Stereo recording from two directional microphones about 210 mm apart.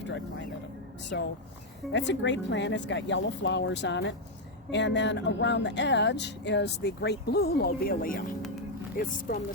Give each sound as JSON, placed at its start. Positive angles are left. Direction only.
{"t": 1.1, "sound": "speech", "side_deg": 50}